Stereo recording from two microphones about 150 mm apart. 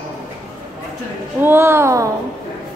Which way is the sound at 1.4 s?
15° right (ahead or behind).